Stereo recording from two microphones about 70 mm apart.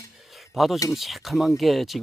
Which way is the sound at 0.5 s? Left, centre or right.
Centre.